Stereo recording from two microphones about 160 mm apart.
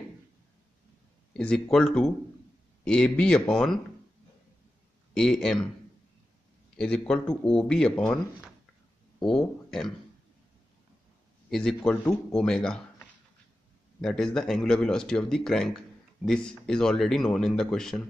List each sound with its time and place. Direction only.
1.3 s speech: 5° left (ahead or behind)
5.1 s speech: 5° left (ahead or behind)
6.8 s speech: 5° left (ahead or behind)
9.2 s speech: 5° left (ahead or behind)
11.5 s speech: 5° left (ahead or behind)